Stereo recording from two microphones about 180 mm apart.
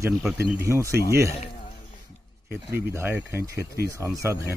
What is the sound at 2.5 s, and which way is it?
Speech, 15° right (ahead or behind).